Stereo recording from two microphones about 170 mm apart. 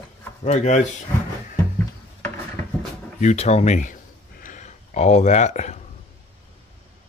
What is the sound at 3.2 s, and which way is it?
Speech, 40° left (ahead or behind).